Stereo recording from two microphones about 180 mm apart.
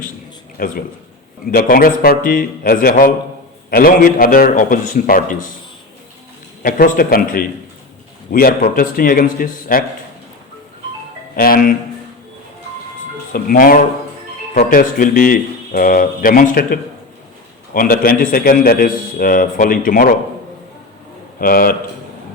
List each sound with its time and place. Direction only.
0.5 s a man's voice: 50° left (ahead or behind)
6.6 s a man's voice: 50° left (ahead or behind)
11.3 s a man's voice: 50° left (ahead or behind)
13.3 s a man's voice: 55° left (ahead or behind)
17.7 s a man's voice: 55° left (ahead or behind)
21.4 s a man's voice: 55° left (ahead or behind)